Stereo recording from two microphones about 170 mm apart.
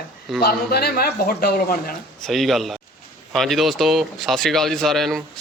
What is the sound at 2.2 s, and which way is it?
Speech, centre (ahead or behind).